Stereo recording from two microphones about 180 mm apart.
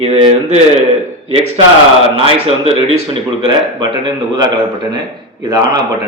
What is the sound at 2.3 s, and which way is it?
Speech, 30° right (ahead or behind).